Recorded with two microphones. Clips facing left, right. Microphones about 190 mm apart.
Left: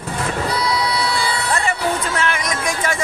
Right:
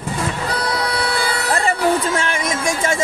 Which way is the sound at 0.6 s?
50° right (ahead or behind).